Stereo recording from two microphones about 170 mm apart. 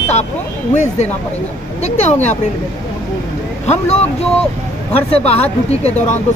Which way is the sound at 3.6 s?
40° left (ahead or behind).